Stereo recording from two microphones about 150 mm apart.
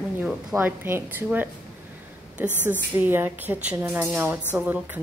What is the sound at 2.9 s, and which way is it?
A woman's voice, 15° right (ahead or behind).